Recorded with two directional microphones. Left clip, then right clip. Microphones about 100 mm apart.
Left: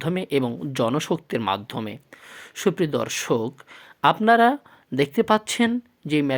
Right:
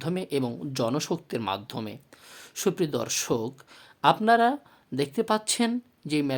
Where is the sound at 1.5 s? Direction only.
25° left (ahead or behind).